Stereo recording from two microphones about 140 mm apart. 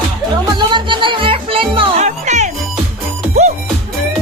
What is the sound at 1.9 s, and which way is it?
Music, 55° right (ahead or behind).